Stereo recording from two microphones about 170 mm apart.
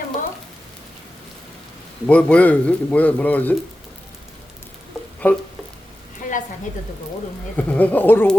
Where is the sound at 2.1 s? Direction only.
10° left (ahead or behind).